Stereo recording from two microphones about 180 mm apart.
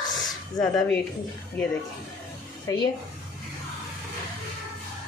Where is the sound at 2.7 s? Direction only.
20° left (ahead or behind).